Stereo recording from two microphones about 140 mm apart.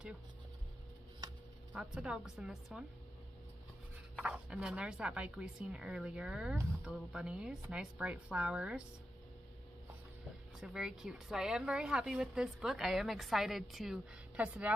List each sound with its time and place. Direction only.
1.7 s speech: 5° right (ahead or behind)
4.2 s speech: 10° right (ahead or behind)
10.6 s speech: 5° right (ahead or behind)